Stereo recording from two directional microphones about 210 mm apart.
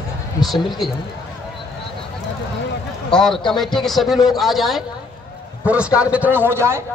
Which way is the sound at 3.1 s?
5° left (ahead or behind).